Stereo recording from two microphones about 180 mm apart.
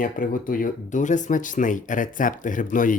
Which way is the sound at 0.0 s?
50° left (ahead or behind).